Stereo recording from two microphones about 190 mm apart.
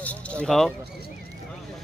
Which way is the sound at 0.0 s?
5° left (ahead or behind).